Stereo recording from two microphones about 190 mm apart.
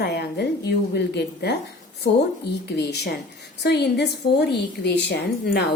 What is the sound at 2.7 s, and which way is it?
A woman's voice, 60° left (ahead or behind).